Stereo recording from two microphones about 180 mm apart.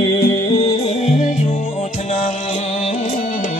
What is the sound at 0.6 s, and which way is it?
Music, 35° left (ahead or behind).